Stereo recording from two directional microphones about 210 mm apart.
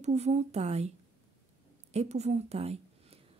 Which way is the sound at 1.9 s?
30° right (ahead or behind).